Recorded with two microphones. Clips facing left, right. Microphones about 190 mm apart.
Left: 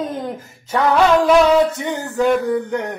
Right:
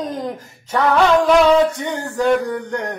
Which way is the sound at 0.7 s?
10° left (ahead or behind).